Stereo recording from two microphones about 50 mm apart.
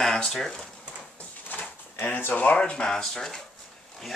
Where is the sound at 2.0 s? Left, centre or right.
Left.